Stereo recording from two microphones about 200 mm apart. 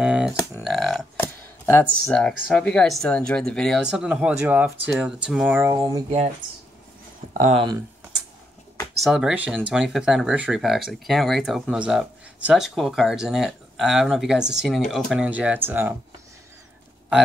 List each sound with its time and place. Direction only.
0.0 s speech: 5° right (ahead or behind)
0.7 s typewriter: centre (ahead or behind)
2.1 s speech: 5° left (ahead or behind); by 6.0 s 15° right (ahead or behind)
6.0 s speech: 30° right (ahead or behind)
7.3 s speech: 35° right (ahead or behind)
9.0 s speech: centre (ahead or behind)